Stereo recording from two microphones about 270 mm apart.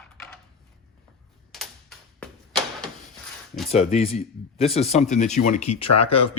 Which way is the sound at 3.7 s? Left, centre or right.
Left.